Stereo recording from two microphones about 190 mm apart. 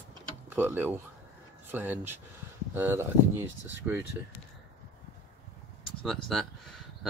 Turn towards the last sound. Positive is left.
turn(degrees=0)  # may be behind; listen again after turning